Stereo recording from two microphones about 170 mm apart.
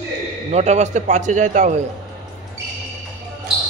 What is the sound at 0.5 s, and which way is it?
Speech, 40° right (ahead or behind).